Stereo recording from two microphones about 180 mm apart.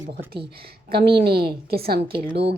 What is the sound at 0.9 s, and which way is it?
A woman's voice, 60° right (ahead or behind).